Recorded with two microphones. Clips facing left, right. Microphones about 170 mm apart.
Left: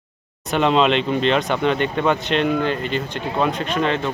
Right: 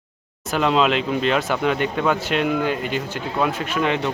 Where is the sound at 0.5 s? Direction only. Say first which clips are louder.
Left 2 dB; centre (ahead or behind).